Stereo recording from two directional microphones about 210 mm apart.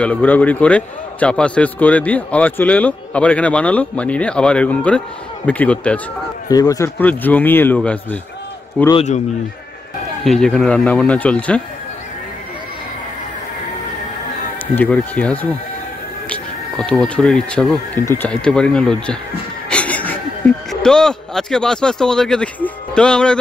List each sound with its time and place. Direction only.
0.0 s a man's voice: 5° left (ahead or behind)
6.5 s a man's voice: 15° left (ahead or behind)
8.9 s a man's voice: 35° left (ahead or behind)
10.2 s speech: centre (ahead or behind)
14.8 s a man's voice: 5° left (ahead or behind)